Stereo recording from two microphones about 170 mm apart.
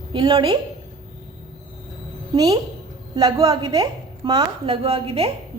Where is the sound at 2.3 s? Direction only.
20° right (ahead or behind).